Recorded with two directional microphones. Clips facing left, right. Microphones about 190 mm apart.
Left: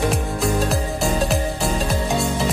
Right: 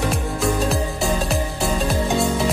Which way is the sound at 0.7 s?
Centre (ahead or behind).